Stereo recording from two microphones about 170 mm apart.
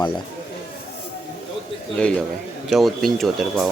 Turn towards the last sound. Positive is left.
turn(degrees=0)  # may be behind; listen again after turning